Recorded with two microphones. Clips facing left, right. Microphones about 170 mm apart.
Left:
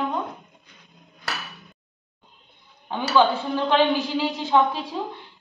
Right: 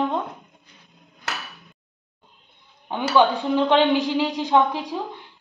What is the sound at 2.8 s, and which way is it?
A woman's voice, 15° right (ahead or behind).